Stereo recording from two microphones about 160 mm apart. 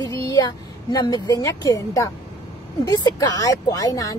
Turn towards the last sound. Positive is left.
turn(degrees=20)  # may be behind; listen again after turning